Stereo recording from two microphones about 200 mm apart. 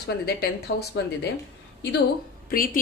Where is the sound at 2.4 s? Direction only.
45° left (ahead or behind).